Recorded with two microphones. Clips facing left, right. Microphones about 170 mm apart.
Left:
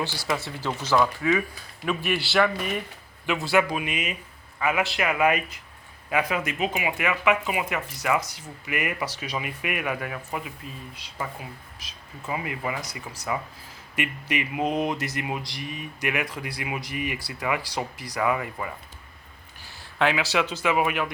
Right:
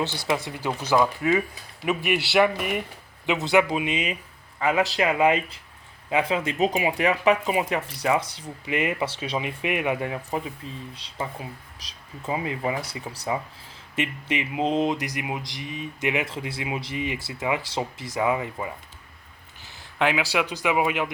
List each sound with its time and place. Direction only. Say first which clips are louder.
0.4 s speech: right 1 dB; 15° right (ahead or behind)
1.8 s speech: right 2 dB; 15° right (ahead or behind)